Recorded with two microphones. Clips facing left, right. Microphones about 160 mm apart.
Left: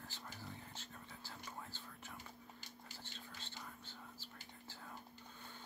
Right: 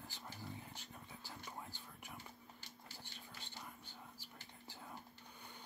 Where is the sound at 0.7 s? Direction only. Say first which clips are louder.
Even; 15° right (ahead or behind).